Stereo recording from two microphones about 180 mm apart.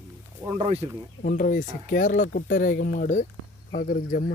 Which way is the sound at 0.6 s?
35° right (ahead or behind).